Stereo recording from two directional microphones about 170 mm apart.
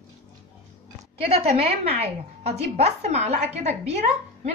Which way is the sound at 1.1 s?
35° right (ahead or behind).